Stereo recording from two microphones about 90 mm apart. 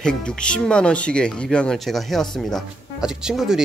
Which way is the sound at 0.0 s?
10° left (ahead or behind).